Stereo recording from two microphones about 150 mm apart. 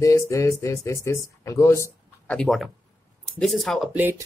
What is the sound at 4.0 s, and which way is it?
Speech, 15° right (ahead or behind).